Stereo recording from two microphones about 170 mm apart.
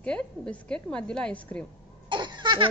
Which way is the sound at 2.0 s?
25° right (ahead or behind).